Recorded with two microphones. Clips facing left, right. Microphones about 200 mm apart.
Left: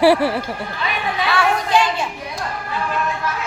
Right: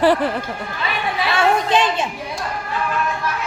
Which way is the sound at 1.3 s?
20° right (ahead or behind).